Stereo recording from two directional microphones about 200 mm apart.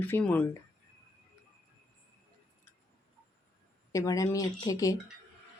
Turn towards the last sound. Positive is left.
turn(degrees=20)  # may be behind; listen again after turning